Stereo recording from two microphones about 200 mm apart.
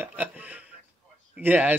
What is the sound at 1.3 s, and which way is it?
Speech, 10° right (ahead or behind).